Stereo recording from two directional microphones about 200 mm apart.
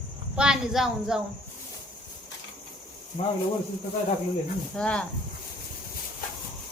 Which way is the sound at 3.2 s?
30° left (ahead or behind).